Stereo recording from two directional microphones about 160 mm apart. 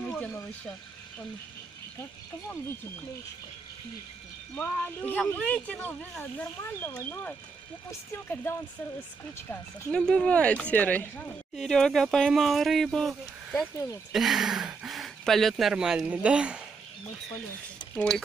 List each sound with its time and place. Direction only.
0.0 s a sound: 5° left (ahead or behind)
2.0 s speech: 15° left (ahead or behind)
4.6 s speech: 10° left (ahead or behind); by 16.6 s 5° right (ahead or behind)
17.9 s speech: 5° left (ahead or behind)